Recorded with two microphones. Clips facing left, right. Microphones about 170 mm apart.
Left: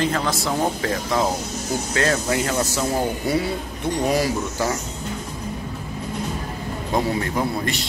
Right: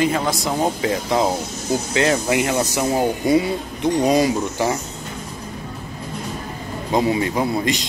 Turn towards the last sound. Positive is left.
turn(degrees=-15)  # may be behind; listen again after turning